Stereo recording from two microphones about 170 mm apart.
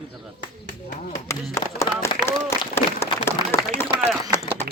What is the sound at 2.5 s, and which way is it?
Speech, 15° left (ahead or behind).